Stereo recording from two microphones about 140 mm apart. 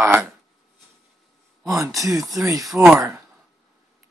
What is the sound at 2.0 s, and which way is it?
Speech, 25° right (ahead or behind).